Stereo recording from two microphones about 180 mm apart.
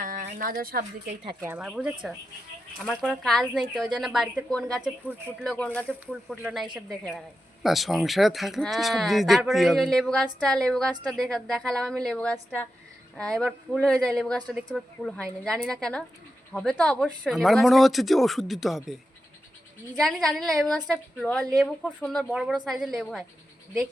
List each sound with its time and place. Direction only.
0.0 s a woman's voice: 50° right (ahead or behind)
1.4 s speech: 10° right (ahead or behind)
4.8 s speech: 5° right (ahead or behind)
5.4 s speech: 5° left (ahead or behind)
20.0 s speech: centre (ahead or behind)